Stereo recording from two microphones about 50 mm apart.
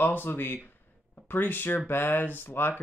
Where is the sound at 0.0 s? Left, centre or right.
Left.